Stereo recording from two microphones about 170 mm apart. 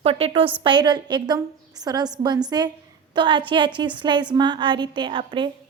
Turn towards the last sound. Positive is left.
turn(degrees=-30)  # may be behind; listen again after turning